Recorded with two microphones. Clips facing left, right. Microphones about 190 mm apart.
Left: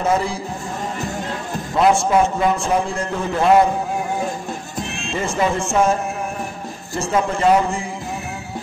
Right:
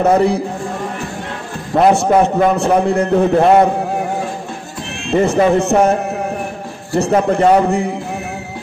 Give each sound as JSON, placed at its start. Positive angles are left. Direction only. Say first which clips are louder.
{"t": 0.0, "sound": "a man's voice", "louder": "right 7 dB", "side_deg": -60}
{"t": 2.0, "sound": "a man's voice", "louder": "right 5 dB", "side_deg": -60}
{"t": 5.1, "sound": "a man's voice", "louder": "right 9 dB", "side_deg": -65}